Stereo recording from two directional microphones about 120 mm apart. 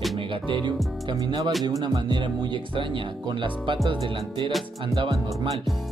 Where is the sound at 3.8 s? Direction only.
45° right (ahead or behind).